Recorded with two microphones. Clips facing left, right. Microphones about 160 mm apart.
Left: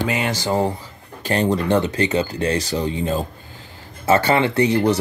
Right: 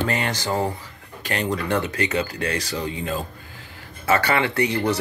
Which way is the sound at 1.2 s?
30° left (ahead or behind).